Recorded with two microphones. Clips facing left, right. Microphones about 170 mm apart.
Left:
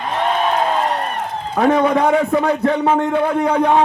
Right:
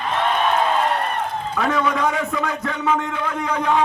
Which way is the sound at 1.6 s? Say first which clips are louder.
Left 7 dB; 35° left (ahead or behind).